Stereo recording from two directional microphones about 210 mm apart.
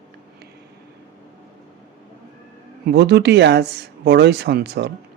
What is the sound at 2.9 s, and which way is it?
Speech, 55° right (ahead or behind).